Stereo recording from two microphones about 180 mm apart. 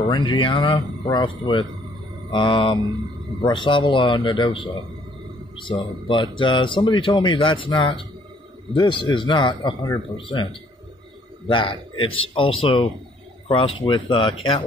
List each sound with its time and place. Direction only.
0.1 s speech: 25° left (ahead or behind)
5.6 s speech: 25° left (ahead or behind)